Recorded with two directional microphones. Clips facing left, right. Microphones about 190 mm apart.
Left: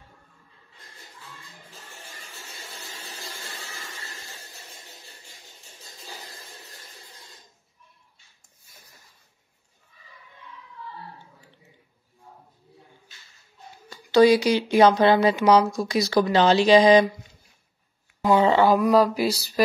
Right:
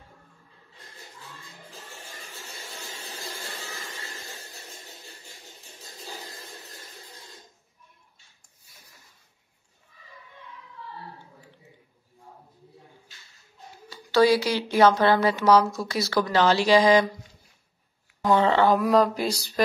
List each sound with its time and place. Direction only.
14.1 s speech: 15° left (ahead or behind)
18.2 s speech: 10° left (ahead or behind)